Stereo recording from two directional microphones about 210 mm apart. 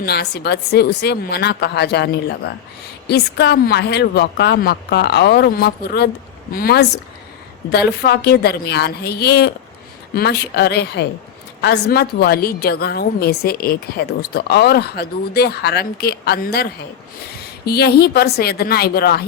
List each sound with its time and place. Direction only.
0.0 s a woman's voice: 50° left (ahead or behind)